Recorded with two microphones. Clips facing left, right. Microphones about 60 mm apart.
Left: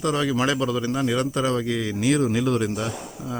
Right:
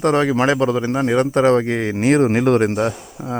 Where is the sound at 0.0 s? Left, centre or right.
Right.